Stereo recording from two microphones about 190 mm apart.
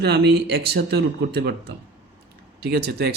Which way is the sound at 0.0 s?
60° right (ahead or behind).